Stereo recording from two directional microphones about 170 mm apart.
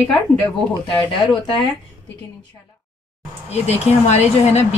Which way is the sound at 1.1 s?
30° left (ahead or behind).